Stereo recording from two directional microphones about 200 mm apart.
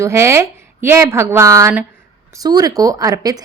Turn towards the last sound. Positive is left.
turn(degrees=-20)  # may be behind; listen again after turning